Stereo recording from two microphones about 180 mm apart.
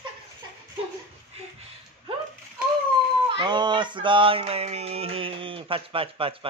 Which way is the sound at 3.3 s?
25° right (ahead or behind).